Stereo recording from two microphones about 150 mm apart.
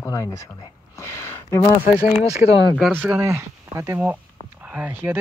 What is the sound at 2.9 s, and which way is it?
Speech, 15° right (ahead or behind).